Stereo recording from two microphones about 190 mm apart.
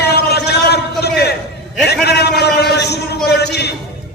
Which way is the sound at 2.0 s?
60° left (ahead or behind).